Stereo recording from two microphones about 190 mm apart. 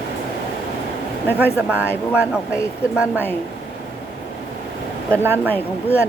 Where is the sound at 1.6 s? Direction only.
10° right (ahead or behind).